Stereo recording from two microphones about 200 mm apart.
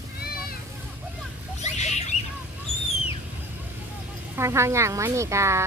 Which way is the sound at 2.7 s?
30° right (ahead or behind).